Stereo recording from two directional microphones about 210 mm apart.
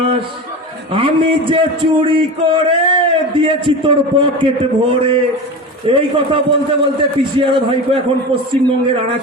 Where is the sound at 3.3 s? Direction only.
25° right (ahead or behind).